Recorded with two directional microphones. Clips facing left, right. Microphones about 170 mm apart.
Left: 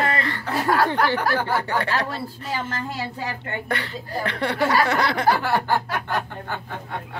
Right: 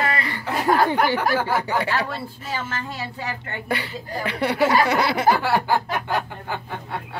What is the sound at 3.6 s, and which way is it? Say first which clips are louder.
Speech: right 5 dB; 5° right (ahead or behind).